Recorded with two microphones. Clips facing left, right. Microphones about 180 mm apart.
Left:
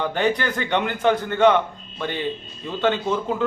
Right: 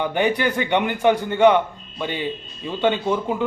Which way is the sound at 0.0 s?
15° right (ahead or behind).